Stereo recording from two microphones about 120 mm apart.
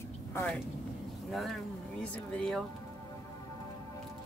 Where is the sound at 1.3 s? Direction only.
Centre (ahead or behind).